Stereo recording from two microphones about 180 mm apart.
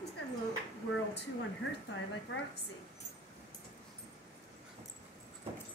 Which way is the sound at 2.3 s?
90° left.